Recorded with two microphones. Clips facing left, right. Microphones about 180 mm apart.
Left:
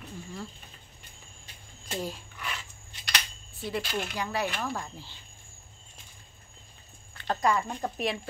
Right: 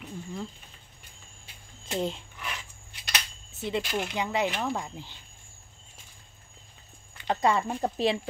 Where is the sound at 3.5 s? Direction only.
20° right (ahead or behind).